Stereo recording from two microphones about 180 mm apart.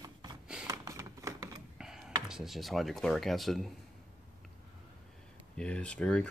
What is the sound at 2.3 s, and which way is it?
Speech, centre (ahead or behind).